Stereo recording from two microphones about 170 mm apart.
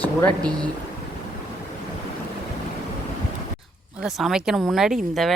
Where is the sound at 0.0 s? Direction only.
10° left (ahead or behind).